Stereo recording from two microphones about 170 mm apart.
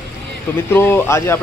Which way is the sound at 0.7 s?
15° left (ahead or behind).